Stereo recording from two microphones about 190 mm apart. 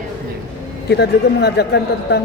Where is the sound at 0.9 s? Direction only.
60° left (ahead or behind).